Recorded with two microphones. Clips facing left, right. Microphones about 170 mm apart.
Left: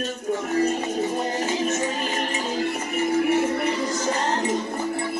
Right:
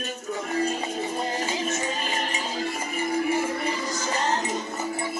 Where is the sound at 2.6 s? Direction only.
55° left (ahead or behind).